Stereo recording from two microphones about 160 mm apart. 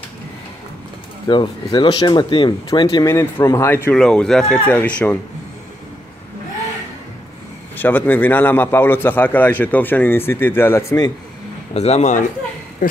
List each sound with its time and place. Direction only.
1.2 s speech: 30° left (ahead or behind); by 5.2 s 10° left (ahead or behind)
7.7 s a man's voice: 10° left (ahead or behind)
11.7 s a man's voice: 40° left (ahead or behind)